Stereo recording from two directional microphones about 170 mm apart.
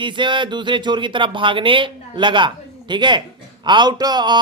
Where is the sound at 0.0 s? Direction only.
30° right (ahead or behind).